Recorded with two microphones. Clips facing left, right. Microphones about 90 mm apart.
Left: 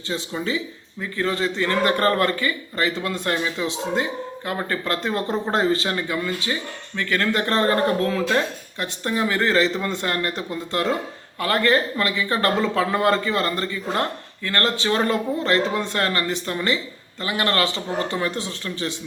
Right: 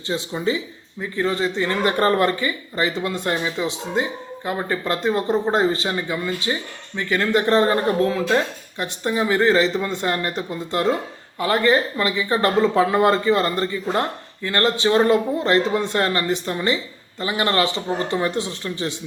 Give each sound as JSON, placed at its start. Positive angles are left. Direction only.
{"t": 0.1, "sound": "speech", "side_deg": -20}